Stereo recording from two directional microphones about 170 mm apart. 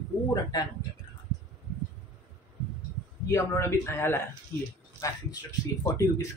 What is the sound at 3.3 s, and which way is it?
Speech, 15° left (ahead or behind).